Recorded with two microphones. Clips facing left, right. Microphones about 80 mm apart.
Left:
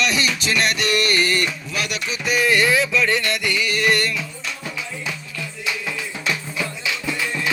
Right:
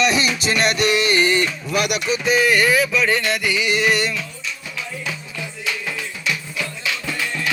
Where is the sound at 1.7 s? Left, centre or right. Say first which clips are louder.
Right 9 dB; right.